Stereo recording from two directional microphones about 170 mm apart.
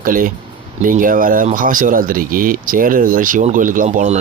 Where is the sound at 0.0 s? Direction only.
55° right (ahead or behind).